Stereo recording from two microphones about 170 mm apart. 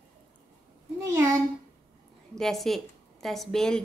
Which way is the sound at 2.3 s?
Centre (ahead or behind).